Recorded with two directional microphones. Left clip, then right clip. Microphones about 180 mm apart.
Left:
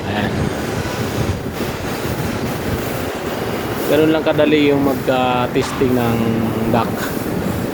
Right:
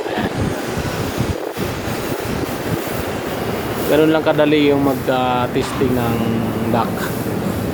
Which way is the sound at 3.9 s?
5° right (ahead or behind).